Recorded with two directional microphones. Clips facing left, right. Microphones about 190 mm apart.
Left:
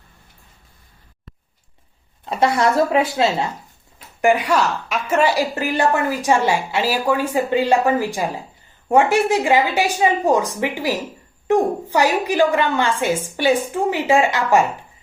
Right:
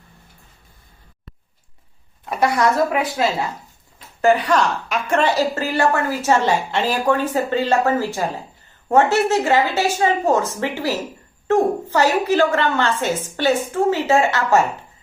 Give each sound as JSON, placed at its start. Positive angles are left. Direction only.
{"t": 2.2, "sound": "a woman's voice", "side_deg": 25}
{"t": 4.2, "sound": "a woman's voice", "side_deg": 10}